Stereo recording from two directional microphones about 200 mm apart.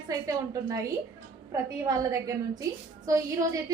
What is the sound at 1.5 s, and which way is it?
A woman's voice, 15° right (ahead or behind).